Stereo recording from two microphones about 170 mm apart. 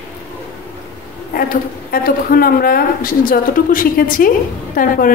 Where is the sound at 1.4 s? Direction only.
60° left (ahead or behind).